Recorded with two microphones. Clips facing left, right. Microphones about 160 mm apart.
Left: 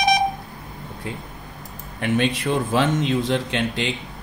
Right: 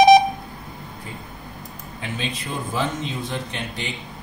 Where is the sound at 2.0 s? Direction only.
70° left (ahead or behind).